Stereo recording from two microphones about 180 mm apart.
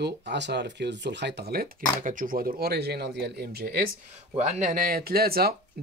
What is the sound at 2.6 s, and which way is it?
Speech, 60° right (ahead or behind).